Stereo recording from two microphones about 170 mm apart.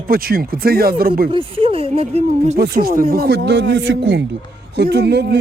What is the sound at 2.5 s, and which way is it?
Speech, 70° right (ahead or behind).